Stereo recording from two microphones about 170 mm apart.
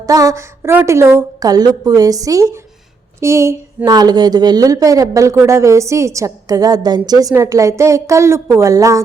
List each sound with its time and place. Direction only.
0.0 s a woman's voice: 20° right (ahead or behind)